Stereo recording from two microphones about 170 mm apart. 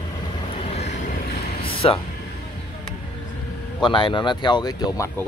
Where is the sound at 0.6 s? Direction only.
40° left (ahead or behind).